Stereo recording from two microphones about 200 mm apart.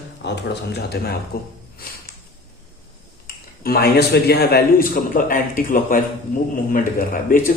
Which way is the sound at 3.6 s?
50° left (ahead or behind).